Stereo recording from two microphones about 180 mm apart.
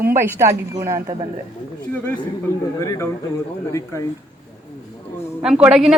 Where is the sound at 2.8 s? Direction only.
15° left (ahead or behind).